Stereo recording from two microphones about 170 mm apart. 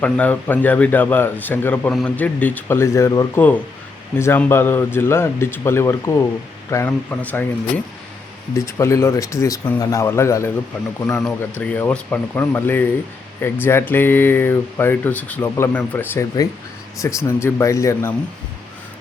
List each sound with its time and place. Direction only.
0.0 s speech: 10° left (ahead or behind)
8.5 s speech: 15° left (ahead or behind)
11.2 s speech: 5° left (ahead or behind)